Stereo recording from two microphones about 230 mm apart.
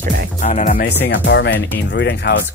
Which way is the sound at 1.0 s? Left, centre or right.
Left.